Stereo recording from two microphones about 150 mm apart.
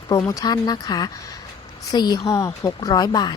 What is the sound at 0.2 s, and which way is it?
Speech, 20° left (ahead or behind).